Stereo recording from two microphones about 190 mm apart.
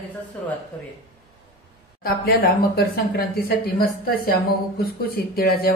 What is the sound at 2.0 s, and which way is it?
Speech, 50° left (ahead or behind).